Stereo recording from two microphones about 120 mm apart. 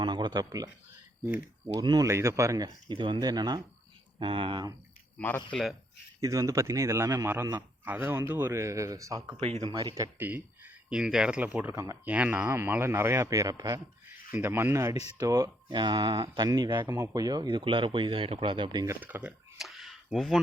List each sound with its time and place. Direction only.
0.0 s speech: 40° right (ahead or behind)
2.0 s speech: 25° right (ahead or behind)
2.9 s speech: 40° right (ahead or behind)
4.2 s speech: 45° right (ahead or behind)
5.1 s speech: 15° left (ahead or behind)
5.5 s speech: 5° left (ahead or behind)
6.1 s speech: 25° right (ahead or behind)
9.6 s speech: 40° right (ahead or behind)
9.9 s speech: 20° right (ahead or behind)
11.7 s speech: 25° right (ahead or behind)
12.0 s speech: 15° right (ahead or behind); by 13.8 s 30° right (ahead or behind)
14.3 s speech: 20° right (ahead or behind); by 18.9 s 40° right (ahead or behind)
18.9 s speech: 15° right (ahead or behind)
19.5 s a sound: centre (ahead or behind)